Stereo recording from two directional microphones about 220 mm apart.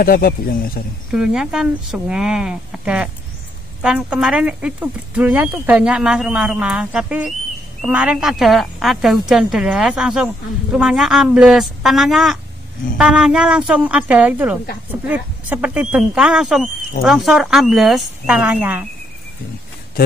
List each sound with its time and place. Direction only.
0.0 s speech: 40° left (ahead or behind)
1.1 s speech: 5° right (ahead or behind)